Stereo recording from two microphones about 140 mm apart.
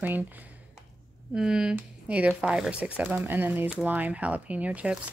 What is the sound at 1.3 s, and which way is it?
Speech, 5° right (ahead or behind).